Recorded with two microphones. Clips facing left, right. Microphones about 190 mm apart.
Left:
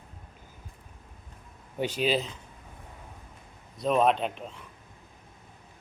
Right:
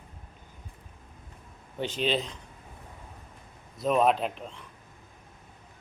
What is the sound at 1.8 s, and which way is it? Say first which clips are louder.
Speech: left 2 dB; 10° left (ahead or behind).